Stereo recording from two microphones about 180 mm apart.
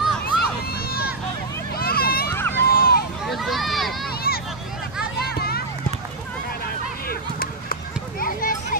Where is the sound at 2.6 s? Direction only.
55° left (ahead or behind).